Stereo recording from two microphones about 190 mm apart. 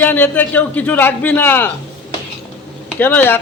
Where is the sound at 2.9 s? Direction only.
10° left (ahead or behind).